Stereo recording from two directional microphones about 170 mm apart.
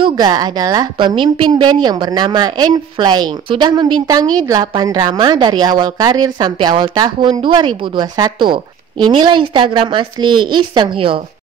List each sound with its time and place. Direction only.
0.0 s a woman's voice: 25° right (ahead or behind)